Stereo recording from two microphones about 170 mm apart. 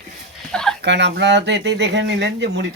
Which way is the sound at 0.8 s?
90° right.